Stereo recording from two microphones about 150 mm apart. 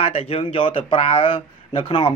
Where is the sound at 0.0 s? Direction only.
40° left (ahead or behind).